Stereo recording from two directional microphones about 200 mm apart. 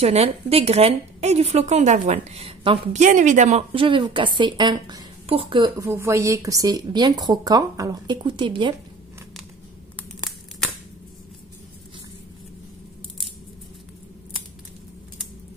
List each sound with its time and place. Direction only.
0.0 s a woman's voice: 30° right (ahead or behind)
3.0 s a woman's voice: 40° right (ahead or behind); by 5.9 s 25° right (ahead or behind)
5.9 s a woman's voice: 15° right (ahead or behind)